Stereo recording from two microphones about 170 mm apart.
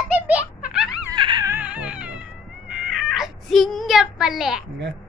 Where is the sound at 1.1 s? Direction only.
25° right (ahead or behind).